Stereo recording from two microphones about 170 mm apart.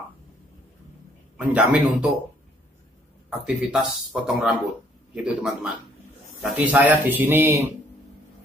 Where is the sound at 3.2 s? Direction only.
5° right (ahead or behind).